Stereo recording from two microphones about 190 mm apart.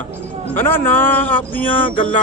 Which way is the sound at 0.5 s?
10° left (ahead or behind).